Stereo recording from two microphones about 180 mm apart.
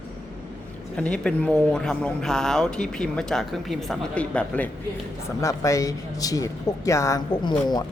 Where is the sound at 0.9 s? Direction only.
5° left (ahead or behind); by 7.8 s 25° left (ahead or behind).